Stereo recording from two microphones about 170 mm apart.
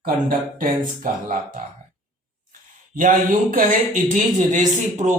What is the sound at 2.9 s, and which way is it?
Speech, 50° right (ahead or behind).